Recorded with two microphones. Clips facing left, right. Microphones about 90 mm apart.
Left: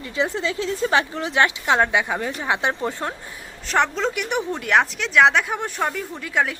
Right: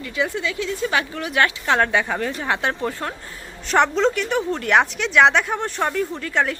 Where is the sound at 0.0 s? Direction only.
30° left (ahead or behind).